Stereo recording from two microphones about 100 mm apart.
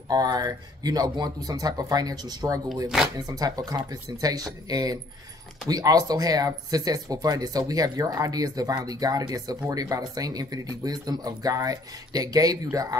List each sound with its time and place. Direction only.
0.1 s speech: 40° right (ahead or behind)